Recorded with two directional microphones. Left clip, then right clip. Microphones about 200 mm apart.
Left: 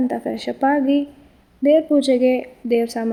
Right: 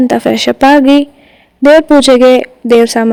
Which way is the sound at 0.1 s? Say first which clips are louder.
Right 14 dB; 50° right (ahead or behind).